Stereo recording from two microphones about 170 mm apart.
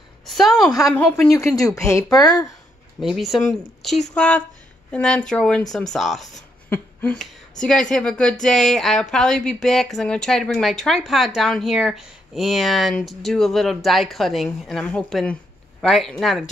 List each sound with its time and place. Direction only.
0.3 s a sound: centre (ahead or behind)
0.7 s speech: 20° left (ahead or behind)
3.0 s speech: centre (ahead or behind)